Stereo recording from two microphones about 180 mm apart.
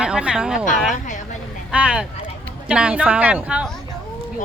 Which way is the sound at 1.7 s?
5° right (ahead or behind).